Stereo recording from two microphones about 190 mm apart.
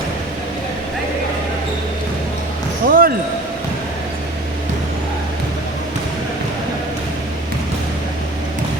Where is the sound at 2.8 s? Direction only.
50° right (ahead or behind).